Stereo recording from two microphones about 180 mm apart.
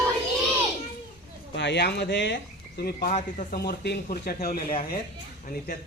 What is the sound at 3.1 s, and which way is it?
Speech, 50° left (ahead or behind).